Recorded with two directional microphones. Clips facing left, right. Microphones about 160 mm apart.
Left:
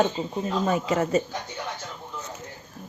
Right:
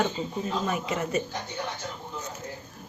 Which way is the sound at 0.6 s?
35° left (ahead or behind).